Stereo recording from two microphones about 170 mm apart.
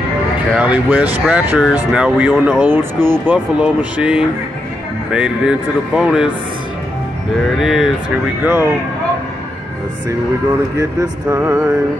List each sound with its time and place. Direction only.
0.6 s speech: 5° right (ahead or behind)
7.6 s speech: centre (ahead or behind)
10.8 s speech: 20° right (ahead or behind)